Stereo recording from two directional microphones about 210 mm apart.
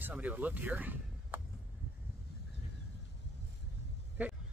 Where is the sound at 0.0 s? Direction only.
5° right (ahead or behind).